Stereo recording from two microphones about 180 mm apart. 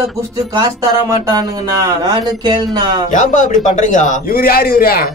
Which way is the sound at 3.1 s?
45° left (ahead or behind).